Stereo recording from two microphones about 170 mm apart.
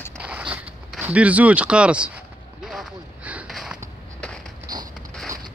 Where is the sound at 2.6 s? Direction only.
Centre (ahead or behind).